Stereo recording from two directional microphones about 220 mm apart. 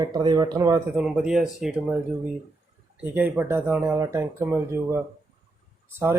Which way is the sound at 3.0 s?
5° right (ahead or behind).